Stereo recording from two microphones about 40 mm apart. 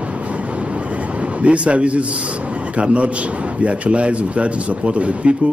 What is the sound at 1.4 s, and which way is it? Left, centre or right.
Speech, right.